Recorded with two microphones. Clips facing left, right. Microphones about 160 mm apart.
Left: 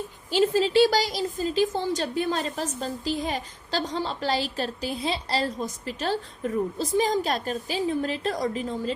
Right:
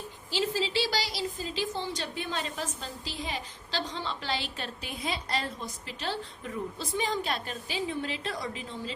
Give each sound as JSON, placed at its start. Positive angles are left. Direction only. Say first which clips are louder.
{"t": 0.3, "sound": "a woman's voice", "louder": "left 8 dB", "side_deg": 50}